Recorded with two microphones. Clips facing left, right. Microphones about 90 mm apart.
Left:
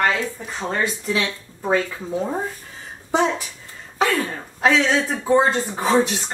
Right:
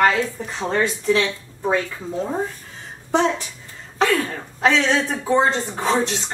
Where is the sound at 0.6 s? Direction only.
Centre (ahead or behind).